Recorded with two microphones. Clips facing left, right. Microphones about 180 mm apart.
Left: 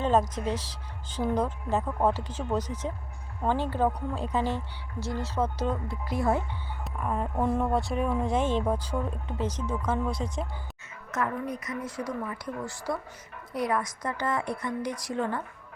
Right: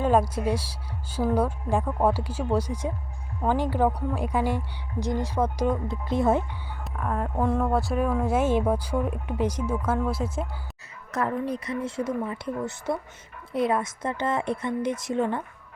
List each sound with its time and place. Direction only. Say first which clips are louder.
0.0 s a woman's voice: right 3 dB; 10° right (ahead or behind)
6.8 s speech: right 2 dB; 5° left (ahead or behind)
11.1 s speech: right 4 dB; 30° right (ahead or behind)